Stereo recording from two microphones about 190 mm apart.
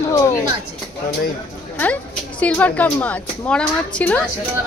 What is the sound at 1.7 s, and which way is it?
A woman's voice, 10° left (ahead or behind).